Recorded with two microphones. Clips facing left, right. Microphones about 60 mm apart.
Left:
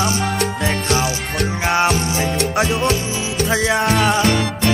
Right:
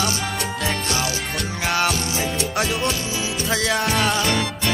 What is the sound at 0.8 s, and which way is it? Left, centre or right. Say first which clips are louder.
Music: left 5 dB; left.